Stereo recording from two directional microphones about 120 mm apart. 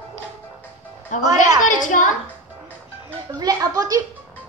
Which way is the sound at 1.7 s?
90° left.